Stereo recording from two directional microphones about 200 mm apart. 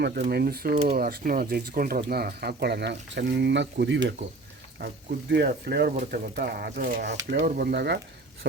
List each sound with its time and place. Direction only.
0.2 s speech: 50° right (ahead or behind)
5.3 s speech: 55° right (ahead or behind)
7.3 s speech: 50° right (ahead or behind)